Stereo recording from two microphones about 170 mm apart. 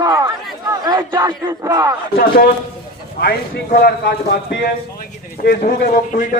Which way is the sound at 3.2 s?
60° left (ahead or behind).